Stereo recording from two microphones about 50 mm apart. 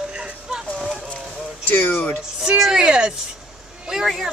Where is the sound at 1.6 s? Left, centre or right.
Left.